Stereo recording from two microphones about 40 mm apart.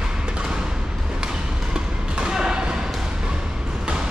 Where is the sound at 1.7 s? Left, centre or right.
Centre.